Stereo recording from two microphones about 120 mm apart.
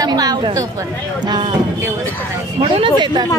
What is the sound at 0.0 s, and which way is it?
Speech, 35° right (ahead or behind).